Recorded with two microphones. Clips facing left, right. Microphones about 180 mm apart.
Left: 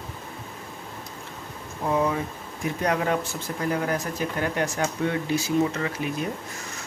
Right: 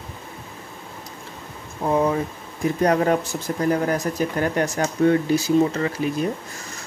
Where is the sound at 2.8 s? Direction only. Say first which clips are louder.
Right 6 dB; 40° right (ahead or behind).